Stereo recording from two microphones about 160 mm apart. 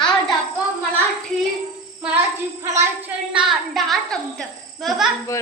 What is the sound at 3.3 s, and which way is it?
Speech, 5° right (ahead or behind).